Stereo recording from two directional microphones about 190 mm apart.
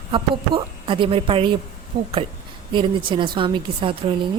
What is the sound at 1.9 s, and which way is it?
Speech, 45° right (ahead or behind).